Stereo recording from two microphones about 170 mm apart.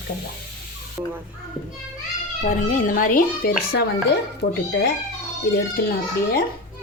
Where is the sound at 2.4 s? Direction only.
45° left (ahead or behind).